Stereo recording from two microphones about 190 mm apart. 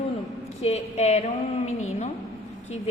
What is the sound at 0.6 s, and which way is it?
A woman's voice, 35° left (ahead or behind).